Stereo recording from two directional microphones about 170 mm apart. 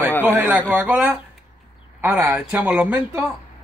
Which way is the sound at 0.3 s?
10° right (ahead or behind).